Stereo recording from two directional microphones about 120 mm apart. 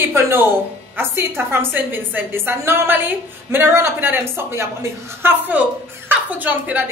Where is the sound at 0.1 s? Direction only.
20° right (ahead or behind).